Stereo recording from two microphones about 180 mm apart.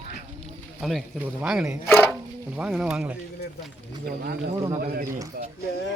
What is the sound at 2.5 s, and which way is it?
Speech, 5° right (ahead or behind).